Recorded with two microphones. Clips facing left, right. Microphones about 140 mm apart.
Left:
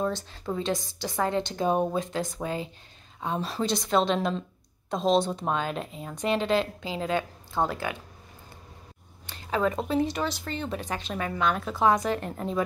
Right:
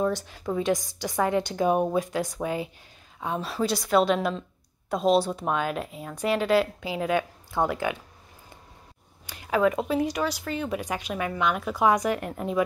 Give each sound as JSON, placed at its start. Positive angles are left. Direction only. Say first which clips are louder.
{"t": 0.5, "sound": "speech", "louder": "right 4 dB", "side_deg": -15}
{"t": 3.2, "sound": "speech", "louder": "right 1 dB", "side_deg": 0}
{"t": 9.5, "sound": "speech", "louder": "right 3 dB", "side_deg": -10}